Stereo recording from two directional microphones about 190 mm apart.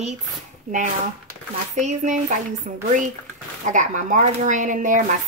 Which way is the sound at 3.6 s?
40° right (ahead or behind).